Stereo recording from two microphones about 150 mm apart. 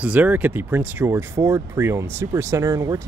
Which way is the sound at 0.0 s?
10° right (ahead or behind).